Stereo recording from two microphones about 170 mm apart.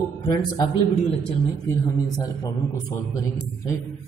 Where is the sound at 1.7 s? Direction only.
20° left (ahead or behind).